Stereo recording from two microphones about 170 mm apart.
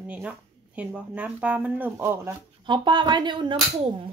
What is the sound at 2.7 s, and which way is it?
Speech, 25° right (ahead or behind).